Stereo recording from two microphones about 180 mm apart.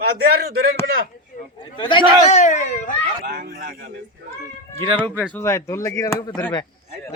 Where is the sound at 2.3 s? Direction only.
40° left (ahead or behind).